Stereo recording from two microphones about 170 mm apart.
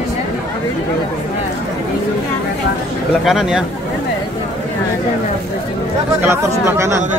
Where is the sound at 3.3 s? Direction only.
Centre (ahead or behind).